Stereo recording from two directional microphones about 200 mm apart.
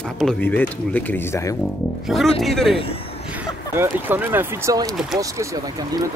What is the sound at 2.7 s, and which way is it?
Speech, 30° left (ahead or behind).